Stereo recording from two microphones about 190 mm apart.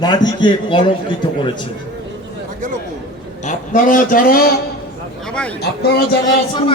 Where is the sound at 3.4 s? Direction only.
40° left (ahead or behind).